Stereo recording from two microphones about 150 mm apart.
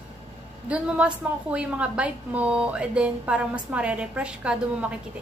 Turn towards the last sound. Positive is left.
turn(degrees=-10)  # may be behind; listen again after turning